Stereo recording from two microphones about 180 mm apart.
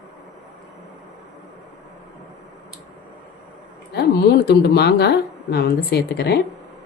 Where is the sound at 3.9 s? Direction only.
65° left (ahead or behind).